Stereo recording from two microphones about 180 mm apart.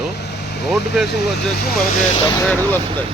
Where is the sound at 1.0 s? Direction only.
65° left (ahead or behind).